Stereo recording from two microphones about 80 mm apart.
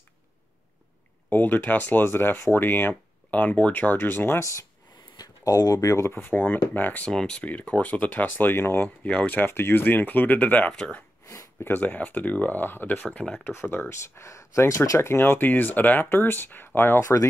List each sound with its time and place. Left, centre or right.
1.3 s speech: left
4.4 s speech: left
5.1 s speech: left
7.1 s speech: centre; by 8.8 s left
8.8 s speech: centre
10.7 s speech: centre
11.2 s a sound: left
11.7 s speech: left
17.0 s speech: left